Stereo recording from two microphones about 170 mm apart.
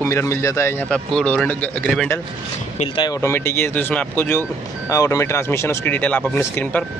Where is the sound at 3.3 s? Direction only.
15° left (ahead or behind).